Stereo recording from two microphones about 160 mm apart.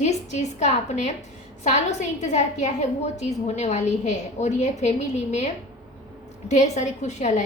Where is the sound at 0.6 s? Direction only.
45° left (ahead or behind).